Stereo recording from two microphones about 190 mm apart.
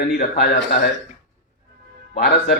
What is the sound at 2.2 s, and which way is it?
Speech, 55° left (ahead or behind).